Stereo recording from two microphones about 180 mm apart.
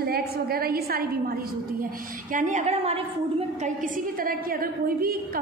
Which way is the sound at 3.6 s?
50° right (ahead or behind).